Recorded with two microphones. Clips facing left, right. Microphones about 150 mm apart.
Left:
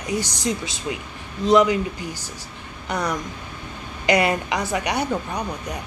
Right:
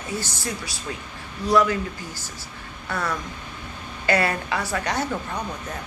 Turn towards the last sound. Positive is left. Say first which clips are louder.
# left 2 dB
turn(degrees=15)  # may be behind; listen again after turning